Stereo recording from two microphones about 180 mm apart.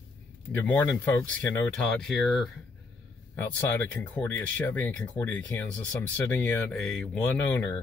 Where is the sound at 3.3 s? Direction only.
10° left (ahead or behind).